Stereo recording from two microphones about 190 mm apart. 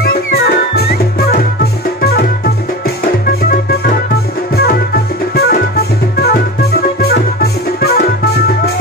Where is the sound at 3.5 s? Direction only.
55° left (ahead or behind).